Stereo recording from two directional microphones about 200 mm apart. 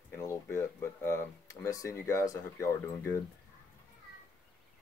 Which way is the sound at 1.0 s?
15° left (ahead or behind).